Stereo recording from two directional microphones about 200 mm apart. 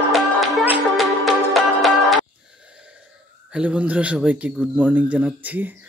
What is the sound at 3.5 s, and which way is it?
Speech, 5° right (ahead or behind).